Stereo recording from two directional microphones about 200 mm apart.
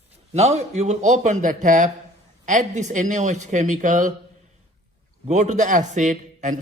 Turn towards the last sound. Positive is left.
turn(degrees=-40)  # may be behind; listen again after turning